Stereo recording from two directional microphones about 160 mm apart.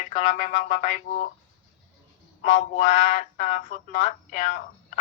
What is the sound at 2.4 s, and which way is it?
Speech, 50° left (ahead or behind).